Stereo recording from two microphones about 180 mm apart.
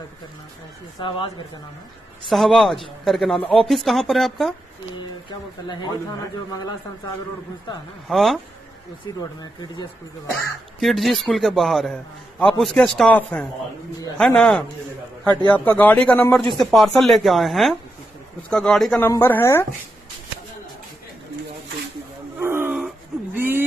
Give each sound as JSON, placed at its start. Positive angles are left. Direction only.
{"t": 0.9, "sound": "a man's voice", "side_deg": 25}
{"t": 2.2, "sound": "a man's voice", "side_deg": 0}
{"t": 5.3, "sound": "a man's voice", "side_deg": 25}
{"t": 8.1, "sound": "a man's voice", "side_deg": 0}
{"t": 9.0, "sound": "a man's voice", "side_deg": 25}
{"t": 10.8, "sound": "a man's voice", "side_deg": 0}
{"t": 18.9, "sound": "a man's voice", "side_deg": 15}
{"t": 22.4, "sound": "wail", "side_deg": -15}
{"t": 22.8, "sound": "a sound", "side_deg": -5}